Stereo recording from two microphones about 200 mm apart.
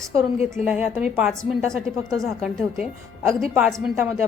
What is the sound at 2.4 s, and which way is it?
A woman's voice, centre (ahead or behind).